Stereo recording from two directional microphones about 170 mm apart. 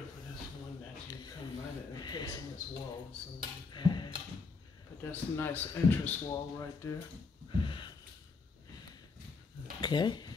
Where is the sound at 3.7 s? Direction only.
25° left (ahead or behind).